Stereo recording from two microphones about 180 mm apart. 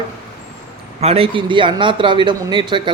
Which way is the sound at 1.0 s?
35° right (ahead or behind).